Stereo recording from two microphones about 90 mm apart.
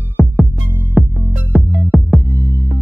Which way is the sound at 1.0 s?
Centre (ahead or behind).